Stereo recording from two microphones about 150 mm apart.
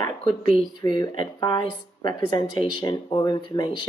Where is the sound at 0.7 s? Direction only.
30° left (ahead or behind).